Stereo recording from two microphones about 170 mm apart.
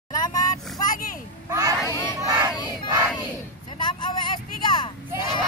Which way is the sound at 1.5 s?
20° right (ahead or behind).